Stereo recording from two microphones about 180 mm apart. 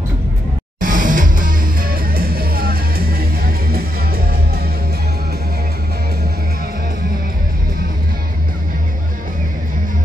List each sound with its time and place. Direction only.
0.7 s music: 50° right (ahead or behind)